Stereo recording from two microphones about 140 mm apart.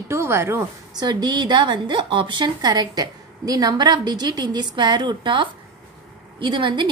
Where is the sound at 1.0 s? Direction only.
30° right (ahead or behind).